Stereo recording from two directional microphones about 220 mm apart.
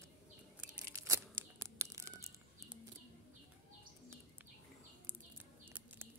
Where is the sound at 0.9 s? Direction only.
15° right (ahead or behind).